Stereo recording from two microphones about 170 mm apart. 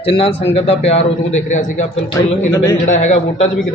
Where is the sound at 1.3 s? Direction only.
45° left (ahead or behind).